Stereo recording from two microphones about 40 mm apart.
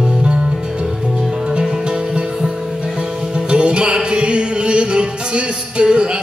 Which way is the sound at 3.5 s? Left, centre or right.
Right.